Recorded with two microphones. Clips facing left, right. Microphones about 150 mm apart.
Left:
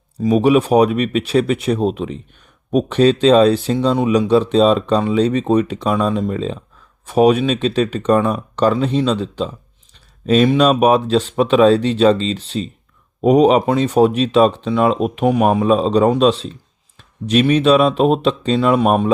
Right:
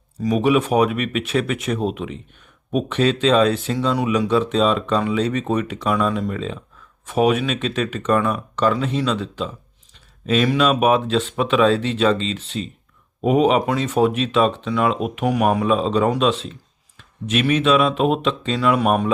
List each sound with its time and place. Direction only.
0.2 s speech: 30° left (ahead or behind)
9.9 s a sound: 35° left (ahead or behind)
10.6 s speech: 35° left (ahead or behind)